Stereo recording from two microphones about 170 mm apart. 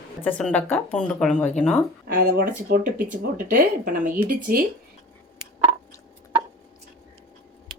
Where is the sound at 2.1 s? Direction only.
55° right (ahead or behind).